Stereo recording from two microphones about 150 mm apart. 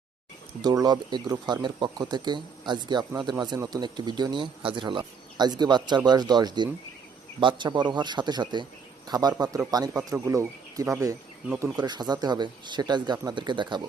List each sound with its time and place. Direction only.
0.6 s speech: 25° right (ahead or behind)